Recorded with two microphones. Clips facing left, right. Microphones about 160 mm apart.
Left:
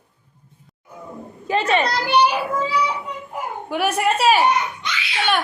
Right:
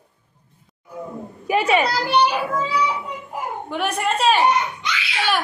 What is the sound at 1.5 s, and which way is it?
Speech, 10° right (ahead or behind).